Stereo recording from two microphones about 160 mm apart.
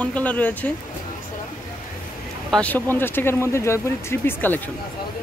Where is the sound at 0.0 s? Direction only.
10° left (ahead or behind).